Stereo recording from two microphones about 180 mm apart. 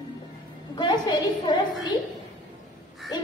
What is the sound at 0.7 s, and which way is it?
Speech, 25° left (ahead or behind).